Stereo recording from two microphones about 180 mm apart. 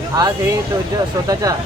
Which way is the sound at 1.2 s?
20° right (ahead or behind).